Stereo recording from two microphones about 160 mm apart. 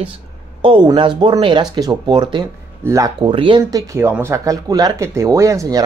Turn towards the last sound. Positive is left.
turn(degrees=-20)  # may be behind; listen again after turning